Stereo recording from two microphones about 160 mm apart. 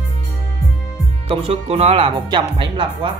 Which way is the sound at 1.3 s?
40° right (ahead or behind).